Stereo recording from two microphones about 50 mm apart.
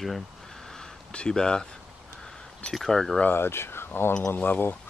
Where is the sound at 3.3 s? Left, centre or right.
Left.